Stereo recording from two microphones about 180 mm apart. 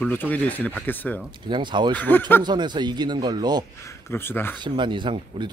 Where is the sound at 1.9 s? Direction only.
10° left (ahead or behind).